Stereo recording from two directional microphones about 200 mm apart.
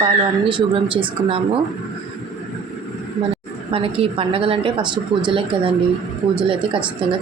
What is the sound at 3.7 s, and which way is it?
Speech, 25° right (ahead or behind).